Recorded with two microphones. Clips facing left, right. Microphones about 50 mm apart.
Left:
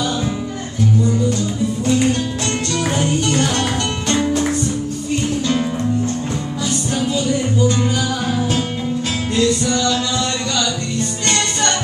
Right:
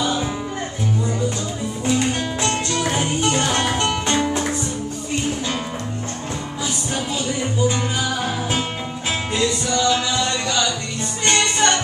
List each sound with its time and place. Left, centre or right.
2.4 s music: centre
7.1 s music: centre
9.3 s music: centre